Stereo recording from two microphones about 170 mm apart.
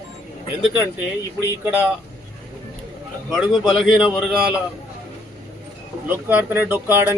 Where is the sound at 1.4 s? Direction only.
15° left (ahead or behind).